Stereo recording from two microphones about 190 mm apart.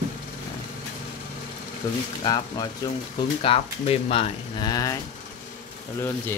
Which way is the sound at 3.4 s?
30° left (ahead or behind).